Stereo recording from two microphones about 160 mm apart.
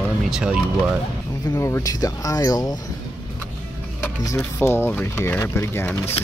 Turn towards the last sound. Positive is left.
turn(degrees=15)  # may be behind; listen again after turning